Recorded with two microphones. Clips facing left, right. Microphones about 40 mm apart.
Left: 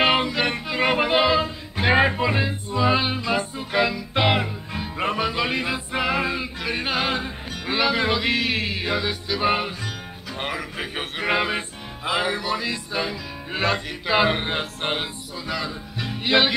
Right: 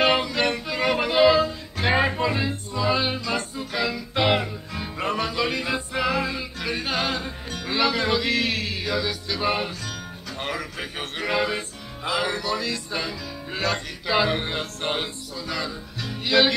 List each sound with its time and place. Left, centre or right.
0.0 s a sound: centre
1.2 s music: centre
6.6 s yodeling: centre
7.6 s music: centre
10.3 s a man's voice: centre
11.2 s music: left
12.0 s music: centre